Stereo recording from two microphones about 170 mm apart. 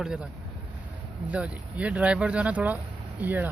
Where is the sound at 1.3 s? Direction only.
10° right (ahead or behind).